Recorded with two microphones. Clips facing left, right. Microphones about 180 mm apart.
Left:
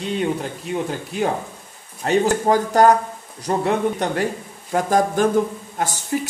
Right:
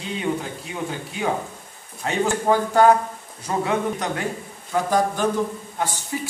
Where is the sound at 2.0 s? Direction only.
40° left (ahead or behind).